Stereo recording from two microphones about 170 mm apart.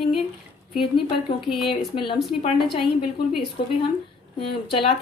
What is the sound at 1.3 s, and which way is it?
Speech, centre (ahead or behind).